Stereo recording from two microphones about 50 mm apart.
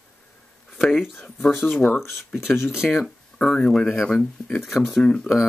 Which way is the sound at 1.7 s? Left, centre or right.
Left.